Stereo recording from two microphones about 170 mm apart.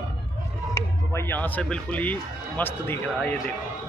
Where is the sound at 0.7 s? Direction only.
15° left (ahead or behind).